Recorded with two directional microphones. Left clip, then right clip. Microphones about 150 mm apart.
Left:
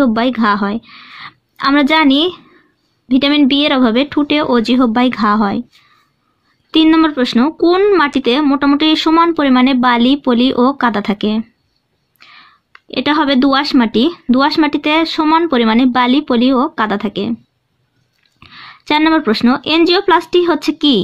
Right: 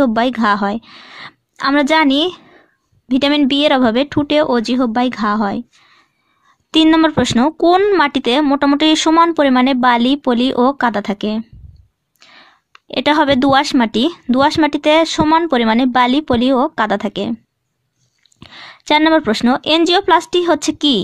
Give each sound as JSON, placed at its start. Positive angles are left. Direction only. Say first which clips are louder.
{"t": 0.0, "sound": "speech", "louder": "left 1 dB", "side_deg": -40}
{"t": 6.7, "sound": "speech", "louder": "left 1 dB", "side_deg": -45}
{"t": 18.4, "sound": "speech", "louder": "even", "side_deg": -35}